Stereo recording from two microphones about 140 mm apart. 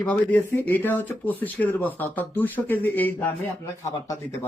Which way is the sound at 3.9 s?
20° left (ahead or behind).